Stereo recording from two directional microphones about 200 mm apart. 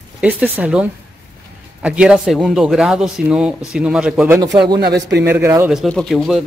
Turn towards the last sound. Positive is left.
turn(degrees=0)  # may be behind; listen again after turning